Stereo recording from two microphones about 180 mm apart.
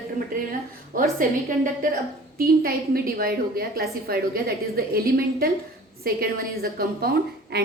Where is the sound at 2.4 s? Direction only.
55° right (ahead or behind).